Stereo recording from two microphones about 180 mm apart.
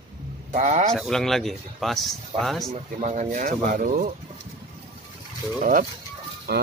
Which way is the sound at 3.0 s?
45° right (ahead or behind).